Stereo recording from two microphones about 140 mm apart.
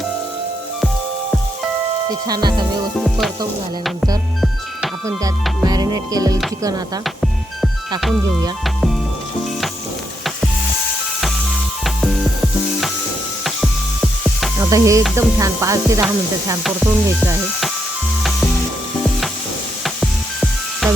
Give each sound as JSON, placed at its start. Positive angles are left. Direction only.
{"t": 2.0, "sound": "chopping", "side_deg": -30}
{"t": 3.0, "sound": "music", "side_deg": 0}
{"t": 5.6, "sound": "chopping", "side_deg": -25}
{"t": 7.0, "sound": "music", "side_deg": 0}
{"t": 11.8, "sound": "music", "side_deg": 0}
{"t": 13.4, "sound": "music", "side_deg": 0}
{"t": 14.6, "sound": "chopping", "side_deg": -20}
{"t": 16.6, "sound": "music", "side_deg": 0}
{"t": 18.2, "sound": "sizzle", "side_deg": 0}
{"t": 19.8, "sound": "music", "side_deg": 0}